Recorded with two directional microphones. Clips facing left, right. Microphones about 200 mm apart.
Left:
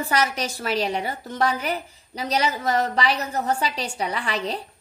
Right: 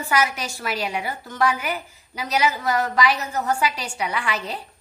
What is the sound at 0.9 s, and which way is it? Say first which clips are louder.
A woman's voice: left 1 dB; 35° left (ahead or behind).